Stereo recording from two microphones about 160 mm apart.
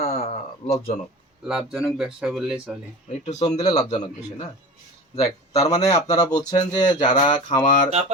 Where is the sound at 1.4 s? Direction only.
5° right (ahead or behind).